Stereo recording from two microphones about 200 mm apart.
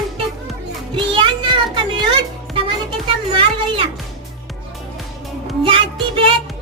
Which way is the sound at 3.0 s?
25° right (ahead or behind).